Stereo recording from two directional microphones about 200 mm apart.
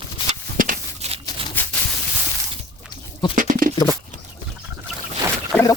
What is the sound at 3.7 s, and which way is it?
Horse, 20° left (ahead or behind).